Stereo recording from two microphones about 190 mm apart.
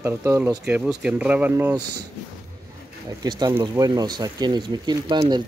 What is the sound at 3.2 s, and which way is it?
Speech, 20° right (ahead or behind).